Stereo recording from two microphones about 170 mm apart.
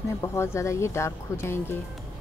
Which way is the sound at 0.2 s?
15° left (ahead or behind).